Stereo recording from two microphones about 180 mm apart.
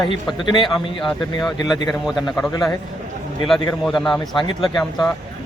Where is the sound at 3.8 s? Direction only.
Centre (ahead or behind).